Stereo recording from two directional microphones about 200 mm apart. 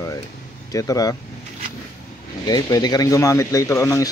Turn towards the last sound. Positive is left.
turn(degrees=15)  # may be behind; listen again after turning